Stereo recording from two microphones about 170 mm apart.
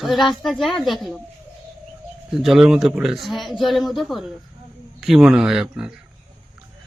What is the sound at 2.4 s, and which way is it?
A man's voice, centre (ahead or behind).